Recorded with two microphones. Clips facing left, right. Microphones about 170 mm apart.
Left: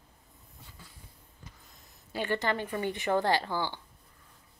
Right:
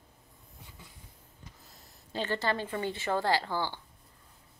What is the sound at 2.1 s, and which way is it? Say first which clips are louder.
Speech: left 1 dB; 15° left (ahead or behind).